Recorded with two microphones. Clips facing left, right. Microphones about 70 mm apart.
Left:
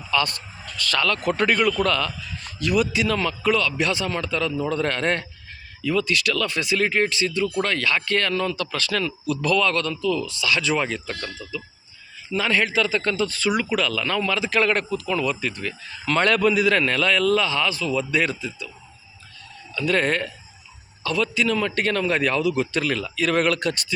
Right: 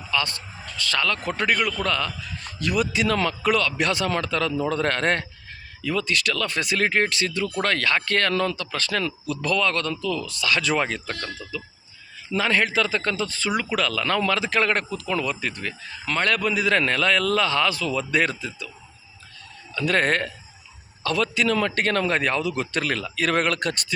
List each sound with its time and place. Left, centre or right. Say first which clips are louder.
0.2 s a man's voice: left 3 dB; right
1.3 s a man's voice: left 4 dB; centre
1.8 s a man's voice: left 3 dB; right
2.6 s speech: left 2 dB; right
9.2 s a man's voice: left 4 dB; right
13.7 s speech: even; right
16.1 s a man's voice: left 3 dB; centre
16.6 s speech: left 2 dB; right
19.8 s speech: even; right
22.5 s speech: left 2 dB; right